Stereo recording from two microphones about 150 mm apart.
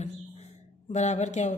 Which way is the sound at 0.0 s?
45° left (ahead or behind).